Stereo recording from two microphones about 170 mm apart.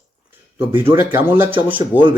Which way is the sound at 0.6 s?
10° right (ahead or behind).